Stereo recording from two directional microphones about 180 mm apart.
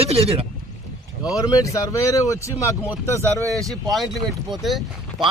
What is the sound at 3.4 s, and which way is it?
Speech, 20° right (ahead or behind).